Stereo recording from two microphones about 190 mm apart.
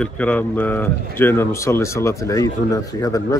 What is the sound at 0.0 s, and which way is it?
Speech, 5° left (ahead or behind).